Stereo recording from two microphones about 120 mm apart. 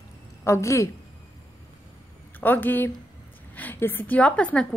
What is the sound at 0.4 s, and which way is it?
Speech, 25° left (ahead or behind).